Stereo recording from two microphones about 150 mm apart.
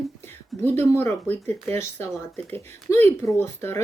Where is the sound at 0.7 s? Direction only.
15° left (ahead or behind).